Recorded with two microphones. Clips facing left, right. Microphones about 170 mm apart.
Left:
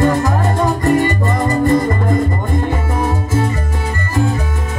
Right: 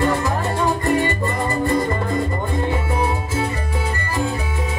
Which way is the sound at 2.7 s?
45° left (ahead or behind).